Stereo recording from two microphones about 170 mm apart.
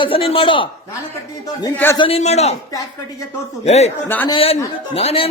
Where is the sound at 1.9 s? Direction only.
35° left (ahead or behind).